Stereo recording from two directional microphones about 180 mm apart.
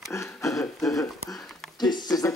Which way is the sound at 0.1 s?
15° left (ahead or behind).